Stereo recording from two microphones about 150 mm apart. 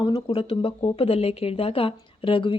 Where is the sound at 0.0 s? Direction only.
35° left (ahead or behind).